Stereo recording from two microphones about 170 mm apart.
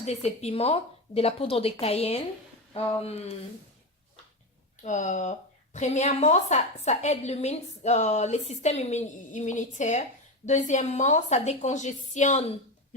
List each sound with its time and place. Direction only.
0.0 s a woman's voice: 40° left (ahead or behind)
4.8 s a woman's voice: 45° left (ahead or behind)